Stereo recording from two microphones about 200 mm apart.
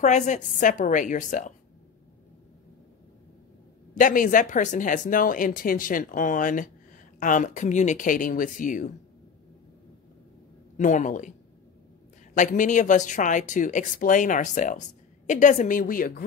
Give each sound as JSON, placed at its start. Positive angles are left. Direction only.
{"t": 0.0, "sound": "speech", "side_deg": 35}
{"t": 4.0, "sound": "speech", "side_deg": 40}
{"t": 10.8, "sound": "speech", "side_deg": 40}
{"t": 12.4, "sound": "speech", "side_deg": 40}